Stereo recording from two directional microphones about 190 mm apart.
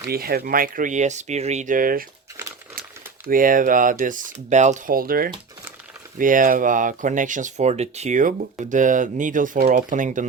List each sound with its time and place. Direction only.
0.0 s speech: 55° right (ahead or behind)
3.2 s speech: 45° right (ahead or behind)